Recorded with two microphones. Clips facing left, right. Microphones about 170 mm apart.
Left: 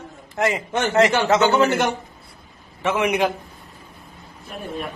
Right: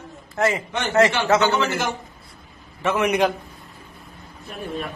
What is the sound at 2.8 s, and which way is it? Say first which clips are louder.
Speech: even; 15° left (ahead or behind).